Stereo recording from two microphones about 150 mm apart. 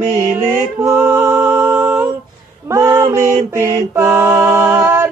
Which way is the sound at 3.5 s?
20° right (ahead or behind).